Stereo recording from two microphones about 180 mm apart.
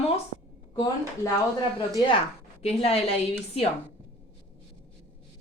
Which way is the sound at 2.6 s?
35° left (ahead or behind).